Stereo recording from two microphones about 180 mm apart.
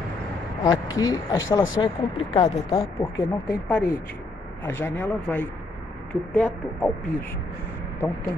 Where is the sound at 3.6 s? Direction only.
10° left (ahead or behind).